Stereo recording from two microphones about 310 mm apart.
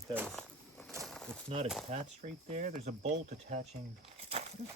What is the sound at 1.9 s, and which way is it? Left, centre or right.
Speech, right.